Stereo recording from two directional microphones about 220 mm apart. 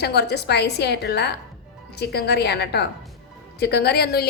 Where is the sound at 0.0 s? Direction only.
50° left (ahead or behind).